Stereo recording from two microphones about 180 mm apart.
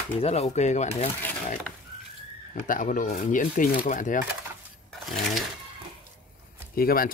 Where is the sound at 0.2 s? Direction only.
35° left (ahead or behind).